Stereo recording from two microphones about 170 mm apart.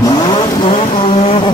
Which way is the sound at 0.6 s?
35° left (ahead or behind).